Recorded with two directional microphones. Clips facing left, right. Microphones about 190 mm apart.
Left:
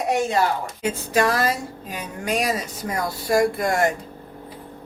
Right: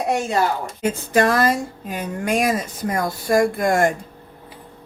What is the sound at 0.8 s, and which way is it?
Speech, 50° right (ahead or behind).